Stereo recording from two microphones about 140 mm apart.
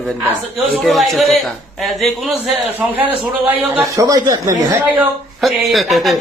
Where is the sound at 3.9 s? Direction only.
25° right (ahead or behind).